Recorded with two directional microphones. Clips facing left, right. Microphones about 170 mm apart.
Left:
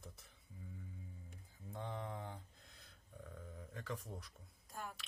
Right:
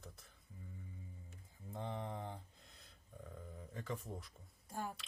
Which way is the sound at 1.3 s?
Centre (ahead or behind).